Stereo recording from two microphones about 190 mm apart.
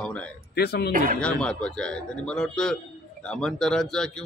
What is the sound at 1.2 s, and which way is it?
Speech, 5° left (ahead or behind).